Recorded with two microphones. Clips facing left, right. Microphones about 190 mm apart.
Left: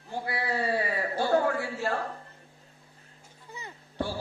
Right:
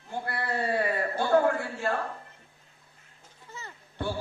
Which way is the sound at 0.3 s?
55° right (ahead or behind).